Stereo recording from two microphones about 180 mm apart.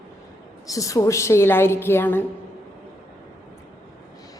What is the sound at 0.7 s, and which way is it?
A woman's voice, 20° left (ahead or behind).